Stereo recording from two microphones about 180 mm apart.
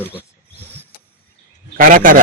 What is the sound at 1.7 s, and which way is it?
Speech, 50° right (ahead or behind).